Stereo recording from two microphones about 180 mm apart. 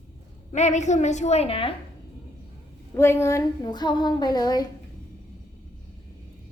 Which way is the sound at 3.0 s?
15° left (ahead or behind).